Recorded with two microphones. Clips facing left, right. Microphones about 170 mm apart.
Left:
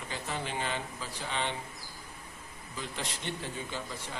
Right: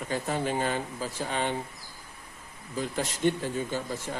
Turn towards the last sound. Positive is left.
turn(degrees=-45)  # may be behind; listen again after turning